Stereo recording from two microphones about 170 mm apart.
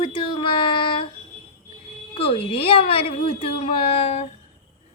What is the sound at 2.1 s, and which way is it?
A woman's voice, 35° left (ahead or behind).